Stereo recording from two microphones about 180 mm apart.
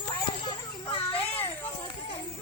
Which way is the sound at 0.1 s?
25° left (ahead or behind).